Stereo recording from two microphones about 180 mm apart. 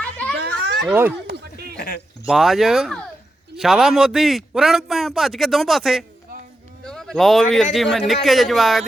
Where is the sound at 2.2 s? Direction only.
Centre (ahead or behind).